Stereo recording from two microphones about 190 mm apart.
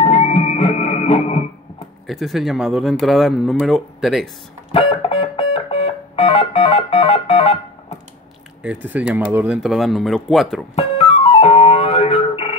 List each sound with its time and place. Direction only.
0.0 s music: 30° left (ahead or behind)
2.0 s speech: centre (ahead or behind)
4.7 s music: 25° left (ahead or behind)
8.6 s speech: 5° right (ahead or behind)
10.8 s music: 30° left (ahead or behind)